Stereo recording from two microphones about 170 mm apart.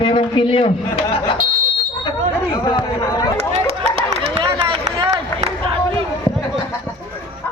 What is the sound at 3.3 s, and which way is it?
Run, 40° right (ahead or behind).